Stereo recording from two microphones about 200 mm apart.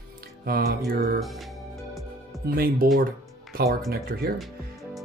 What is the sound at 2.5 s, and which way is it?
Speech, 45° right (ahead or behind).